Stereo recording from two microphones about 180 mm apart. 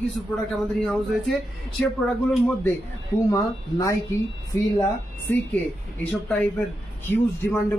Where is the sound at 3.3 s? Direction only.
15° left (ahead or behind).